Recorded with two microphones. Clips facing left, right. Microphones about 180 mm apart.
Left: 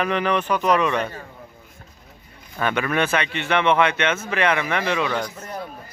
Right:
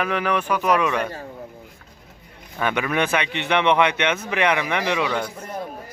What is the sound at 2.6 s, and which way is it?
Speech, 15° right (ahead or behind).